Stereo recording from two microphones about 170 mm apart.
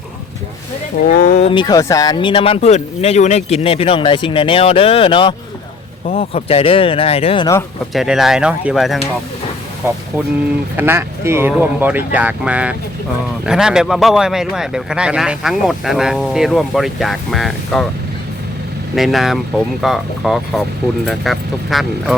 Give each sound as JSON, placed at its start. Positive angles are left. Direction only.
{"t": 1.0, "sound": "speech", "side_deg": 60}
{"t": 1.4, "sound": "speech", "side_deg": 30}
{"t": 7.9, "sound": "speech", "side_deg": 0}
{"t": 9.8, "sound": "speech", "side_deg": -15}
{"t": 18.9, "sound": "speech", "side_deg": 0}